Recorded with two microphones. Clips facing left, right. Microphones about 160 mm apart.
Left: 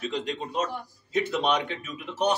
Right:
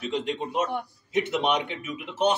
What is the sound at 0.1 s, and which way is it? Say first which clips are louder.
A man's voice: right 2 dB; 20° right (ahead or behind).